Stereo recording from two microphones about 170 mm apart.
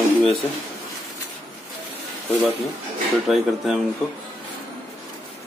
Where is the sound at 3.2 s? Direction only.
Centre (ahead or behind).